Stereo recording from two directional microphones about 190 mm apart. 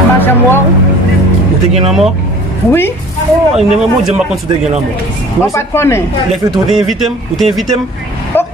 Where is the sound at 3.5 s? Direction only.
5° right (ahead or behind).